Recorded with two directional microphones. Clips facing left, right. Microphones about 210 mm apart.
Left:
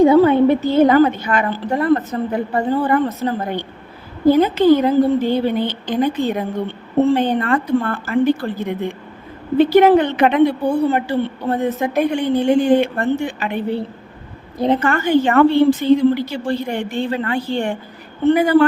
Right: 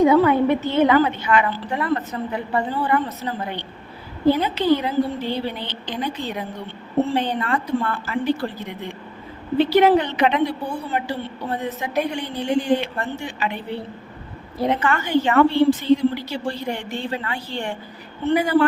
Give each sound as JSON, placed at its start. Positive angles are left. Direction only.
{"t": 0.0, "sound": "a woman's voice", "side_deg": 30}
{"t": 14.8, "sound": "a woman's voice", "side_deg": 45}